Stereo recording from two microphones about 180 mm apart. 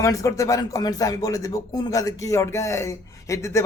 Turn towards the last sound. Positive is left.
turn(degrees=15)  # may be behind; listen again after turning